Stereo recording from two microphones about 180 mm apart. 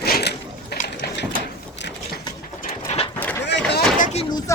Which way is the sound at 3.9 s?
45° left (ahead or behind).